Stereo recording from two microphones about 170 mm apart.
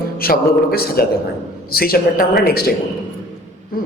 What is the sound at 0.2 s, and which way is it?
A man's voice, 60° left (ahead or behind).